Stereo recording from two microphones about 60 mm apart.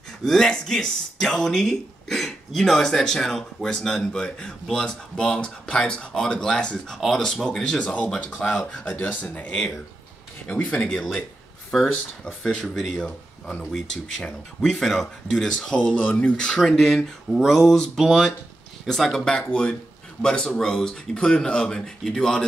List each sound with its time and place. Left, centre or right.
0.2 s speech: centre
7.8 s speech: centre
12.6 s speech: centre
12.9 s speech: centre